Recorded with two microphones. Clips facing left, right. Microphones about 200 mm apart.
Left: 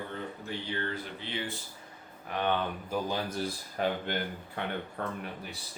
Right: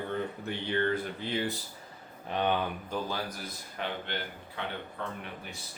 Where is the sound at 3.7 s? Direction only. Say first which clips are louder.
Left 5 dB; 45° left (ahead or behind).